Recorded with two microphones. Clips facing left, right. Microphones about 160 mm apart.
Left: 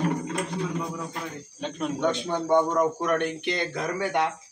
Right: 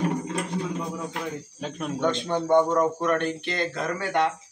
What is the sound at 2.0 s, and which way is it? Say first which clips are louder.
Speech: right 2 dB; 10° left (ahead or behind).